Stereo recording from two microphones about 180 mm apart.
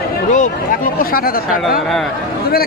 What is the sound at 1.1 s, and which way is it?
Speech, 55° left (ahead or behind).